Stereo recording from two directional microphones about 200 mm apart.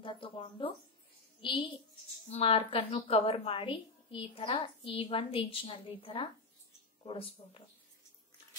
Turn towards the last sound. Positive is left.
turn(degrees=25)  # may be behind; listen again after turning